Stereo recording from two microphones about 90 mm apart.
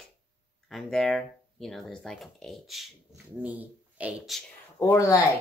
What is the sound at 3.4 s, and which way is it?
Speech, 15° right (ahead or behind).